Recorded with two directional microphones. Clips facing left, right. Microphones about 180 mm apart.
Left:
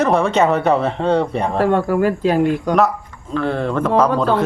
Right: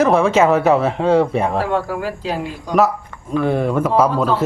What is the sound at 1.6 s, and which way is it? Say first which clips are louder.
Speech: left 5 dB; 50° left (ahead or behind).